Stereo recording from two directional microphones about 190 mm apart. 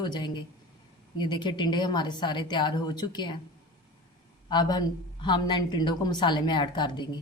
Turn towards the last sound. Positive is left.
turn(degrees=25)  # may be behind; listen again after turning